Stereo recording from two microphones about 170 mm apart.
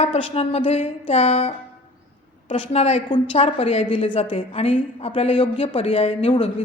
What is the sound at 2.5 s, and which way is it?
A woman's voice, 40° left (ahead or behind).